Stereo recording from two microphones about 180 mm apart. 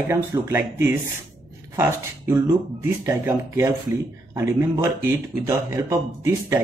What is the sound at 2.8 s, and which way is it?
Speech, 15° right (ahead or behind).